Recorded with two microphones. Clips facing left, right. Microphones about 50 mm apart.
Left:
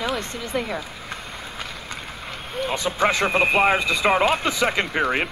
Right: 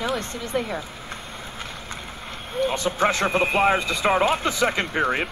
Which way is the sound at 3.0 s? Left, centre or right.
Left.